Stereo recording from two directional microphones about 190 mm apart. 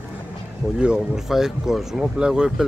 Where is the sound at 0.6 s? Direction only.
5° right (ahead or behind).